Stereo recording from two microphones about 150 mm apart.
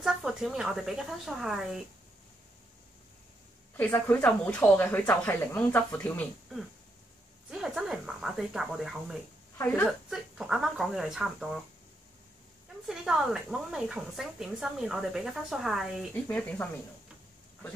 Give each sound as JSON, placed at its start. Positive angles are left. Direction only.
{"t": 0.0, "sound": "speech", "side_deg": -5}
{"t": 3.7, "sound": "speech", "side_deg": 10}
{"t": 7.5, "sound": "speech", "side_deg": -5}
{"t": 9.6, "sound": "speech", "side_deg": 10}
{"t": 10.0, "sound": "speech", "side_deg": -5}
{"t": 12.8, "sound": "speech", "side_deg": -5}
{"t": 16.3, "sound": "speech", "side_deg": 10}